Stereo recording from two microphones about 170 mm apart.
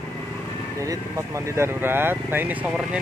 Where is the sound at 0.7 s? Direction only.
20° right (ahead or behind).